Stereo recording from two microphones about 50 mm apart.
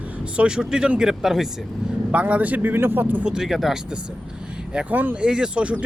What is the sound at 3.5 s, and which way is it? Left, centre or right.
Speech, centre.